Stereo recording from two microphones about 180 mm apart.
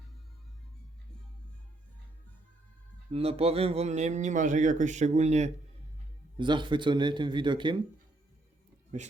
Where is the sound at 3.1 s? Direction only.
35° right (ahead or behind).